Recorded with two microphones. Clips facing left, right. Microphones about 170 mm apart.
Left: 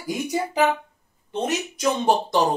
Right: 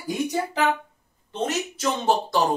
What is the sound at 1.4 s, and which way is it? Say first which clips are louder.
Speech: left 2 dB; 15° left (ahead or behind).